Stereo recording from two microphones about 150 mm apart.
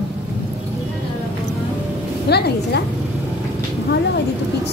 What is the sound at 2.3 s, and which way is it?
Speech, 90° left.